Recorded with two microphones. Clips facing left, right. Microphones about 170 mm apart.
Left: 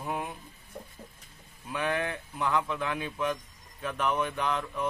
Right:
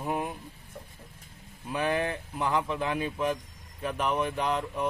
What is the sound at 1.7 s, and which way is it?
Speech, 35° right (ahead or behind).